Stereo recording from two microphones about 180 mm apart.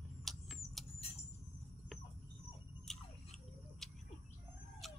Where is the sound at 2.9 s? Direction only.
Centre (ahead or behind).